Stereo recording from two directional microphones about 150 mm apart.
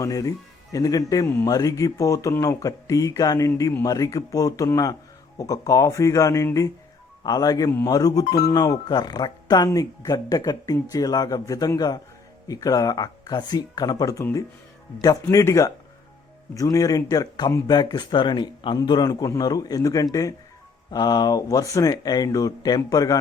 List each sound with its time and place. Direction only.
0.0 s speech: 20° left (ahead or behind)